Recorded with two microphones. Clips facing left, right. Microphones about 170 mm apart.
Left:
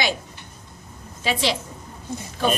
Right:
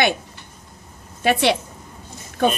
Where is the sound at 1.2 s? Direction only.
60° right (ahead or behind).